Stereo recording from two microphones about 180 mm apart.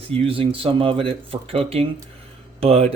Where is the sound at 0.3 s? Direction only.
30° right (ahead or behind).